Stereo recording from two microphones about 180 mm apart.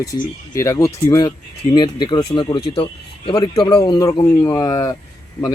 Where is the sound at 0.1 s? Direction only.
15° left (ahead or behind).